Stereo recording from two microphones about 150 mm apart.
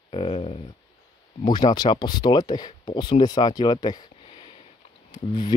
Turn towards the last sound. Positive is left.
turn(degrees=30)  # may be behind; listen again after turning